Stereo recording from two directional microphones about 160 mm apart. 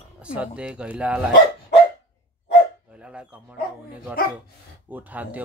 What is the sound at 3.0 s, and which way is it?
Dog, 5° right (ahead or behind).